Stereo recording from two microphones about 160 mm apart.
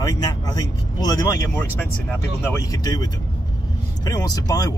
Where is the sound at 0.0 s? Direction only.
25° left (ahead or behind).